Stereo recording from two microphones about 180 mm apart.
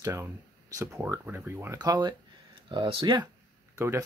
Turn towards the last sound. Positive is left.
turn(degrees=-15)  # may be behind; listen again after turning